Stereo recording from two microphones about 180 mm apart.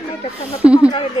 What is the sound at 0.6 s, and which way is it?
Speech, 5° right (ahead or behind).